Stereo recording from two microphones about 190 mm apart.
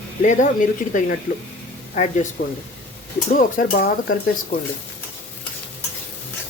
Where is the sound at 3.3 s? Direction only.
50° left (ahead or behind).